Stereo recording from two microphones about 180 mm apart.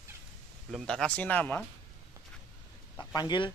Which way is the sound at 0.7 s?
Centre (ahead or behind).